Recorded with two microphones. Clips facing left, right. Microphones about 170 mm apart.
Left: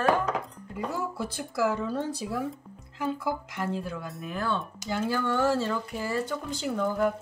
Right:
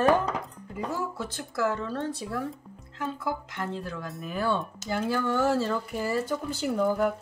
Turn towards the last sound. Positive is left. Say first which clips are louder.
# right 2 dB
turn(degrees=-5)  # may be behind; listen again after turning